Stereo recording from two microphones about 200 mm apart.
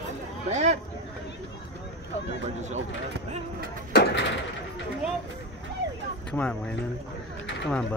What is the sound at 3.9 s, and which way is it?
Speech, 55° left (ahead or behind).